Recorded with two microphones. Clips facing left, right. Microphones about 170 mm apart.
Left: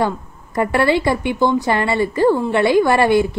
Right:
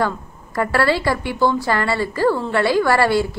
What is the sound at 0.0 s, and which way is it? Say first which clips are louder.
Speech: left 2 dB; 20° left (ahead or behind).